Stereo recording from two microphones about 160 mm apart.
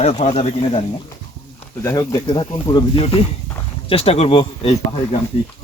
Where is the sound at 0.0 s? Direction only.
40° left (ahead or behind).